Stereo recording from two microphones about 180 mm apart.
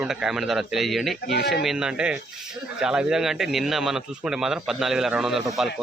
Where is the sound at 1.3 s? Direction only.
65° left (ahead or behind).